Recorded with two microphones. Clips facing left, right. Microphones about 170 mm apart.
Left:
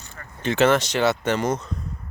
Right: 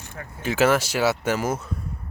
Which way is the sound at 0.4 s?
5° right (ahead or behind).